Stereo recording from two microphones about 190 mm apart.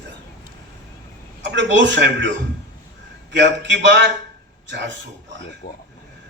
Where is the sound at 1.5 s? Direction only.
70° right (ahead or behind).